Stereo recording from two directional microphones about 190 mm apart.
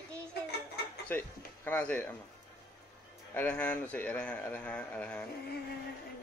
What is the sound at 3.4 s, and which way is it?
Speech, 10° left (ahead or behind).